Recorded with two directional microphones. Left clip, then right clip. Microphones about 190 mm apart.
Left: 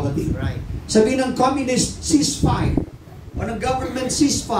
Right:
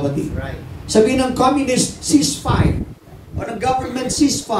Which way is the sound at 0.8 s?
35° right (ahead or behind).